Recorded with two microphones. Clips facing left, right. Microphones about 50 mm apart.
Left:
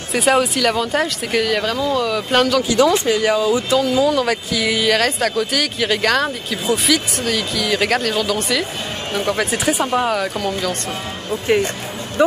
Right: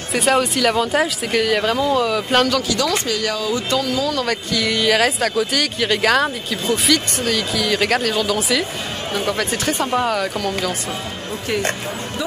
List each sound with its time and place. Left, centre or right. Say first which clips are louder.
0.1 s speech: left 1 dB; centre
2.7 s speech: left 5 dB; left; by 10.5 s centre
12.2 s speech: left 11 dB; left